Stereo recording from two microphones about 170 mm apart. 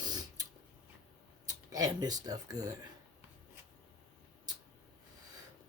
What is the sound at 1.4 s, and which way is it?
Speech, 20° right (ahead or behind).